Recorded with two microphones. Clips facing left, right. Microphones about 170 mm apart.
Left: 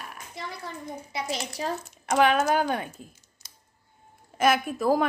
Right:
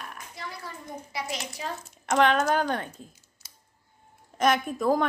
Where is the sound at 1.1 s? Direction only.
25° left (ahead or behind).